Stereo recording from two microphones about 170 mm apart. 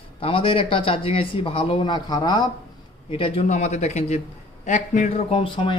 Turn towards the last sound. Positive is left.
turn(degrees=30)  # may be behind; listen again after turning